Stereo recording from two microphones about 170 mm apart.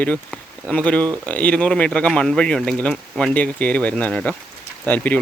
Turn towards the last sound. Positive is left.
turn(degrees=10)  # may be behind; listen again after turning